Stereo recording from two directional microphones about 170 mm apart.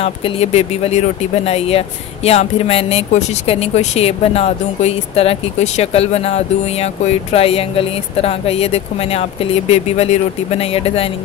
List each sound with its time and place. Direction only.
0.0 s speech: 35° left (ahead or behind)